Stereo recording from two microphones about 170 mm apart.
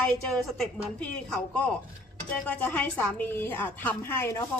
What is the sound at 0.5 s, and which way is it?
A woman's voice, 5° left (ahead or behind).